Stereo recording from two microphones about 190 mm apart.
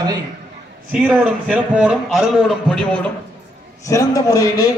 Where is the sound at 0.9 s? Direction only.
5° right (ahead or behind).